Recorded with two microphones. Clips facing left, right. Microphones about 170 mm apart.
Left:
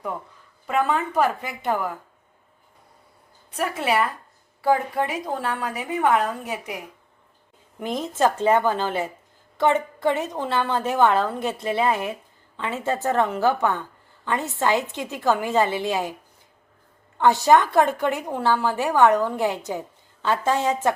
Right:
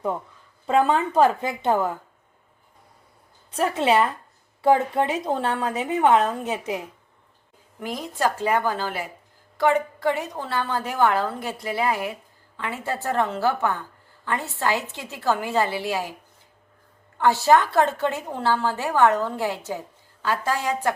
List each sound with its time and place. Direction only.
0.7 s a woman's voice: 30° right (ahead or behind)
3.6 s a woman's voice: 25° right (ahead or behind)
7.8 s a woman's voice: 20° left (ahead or behind)
17.2 s a woman's voice: 20° left (ahead or behind)